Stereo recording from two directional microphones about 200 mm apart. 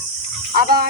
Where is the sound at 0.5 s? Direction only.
50° right (ahead or behind).